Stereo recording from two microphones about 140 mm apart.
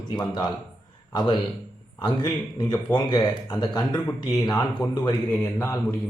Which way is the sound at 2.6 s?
30° left (ahead or behind).